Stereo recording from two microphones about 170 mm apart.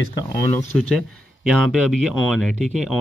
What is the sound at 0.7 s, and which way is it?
Speech, 5° left (ahead or behind).